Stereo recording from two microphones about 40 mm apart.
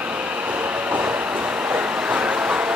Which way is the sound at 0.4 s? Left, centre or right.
Right.